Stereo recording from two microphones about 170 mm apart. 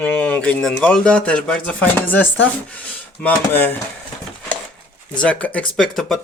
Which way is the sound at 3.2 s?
10° left (ahead or behind).